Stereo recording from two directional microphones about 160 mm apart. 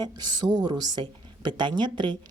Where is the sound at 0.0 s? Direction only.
25° right (ahead or behind).